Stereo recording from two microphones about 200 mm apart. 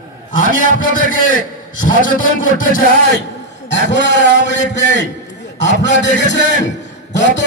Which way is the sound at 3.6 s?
60° left (ahead or behind).